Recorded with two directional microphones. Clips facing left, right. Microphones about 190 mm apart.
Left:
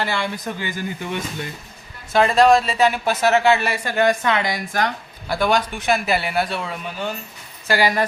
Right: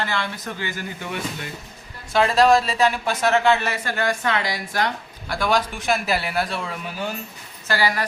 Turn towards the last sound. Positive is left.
turn(degrees=15)  # may be behind; listen again after turning